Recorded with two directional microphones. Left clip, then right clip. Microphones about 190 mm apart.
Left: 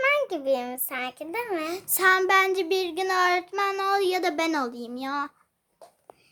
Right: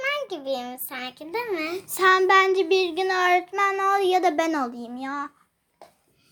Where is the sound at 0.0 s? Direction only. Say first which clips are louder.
Left 4 dB; 40° left (ahead or behind).